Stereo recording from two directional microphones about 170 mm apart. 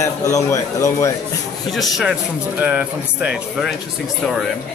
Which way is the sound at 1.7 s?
Centre (ahead or behind).